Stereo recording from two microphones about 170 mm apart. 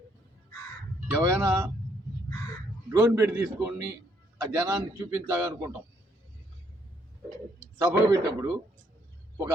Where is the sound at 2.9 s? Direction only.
15° right (ahead or behind).